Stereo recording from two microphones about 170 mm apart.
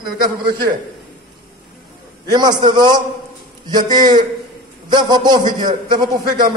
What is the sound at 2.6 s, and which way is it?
A man's voice, 25° right (ahead or behind).